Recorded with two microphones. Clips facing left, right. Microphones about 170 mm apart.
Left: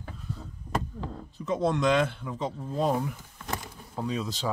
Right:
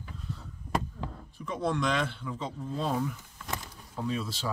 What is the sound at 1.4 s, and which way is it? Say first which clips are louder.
Speech: left 4 dB; 20° left (ahead or behind).